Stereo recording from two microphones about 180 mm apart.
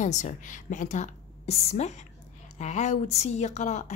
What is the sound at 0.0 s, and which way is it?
A woman's voice, 45° left (ahead or behind).